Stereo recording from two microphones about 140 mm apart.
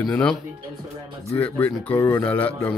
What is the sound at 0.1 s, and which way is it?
Speech, 5° left (ahead or behind).